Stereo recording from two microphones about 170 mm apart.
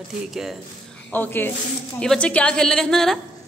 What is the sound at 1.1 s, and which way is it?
A woman's voice, 10° left (ahead or behind).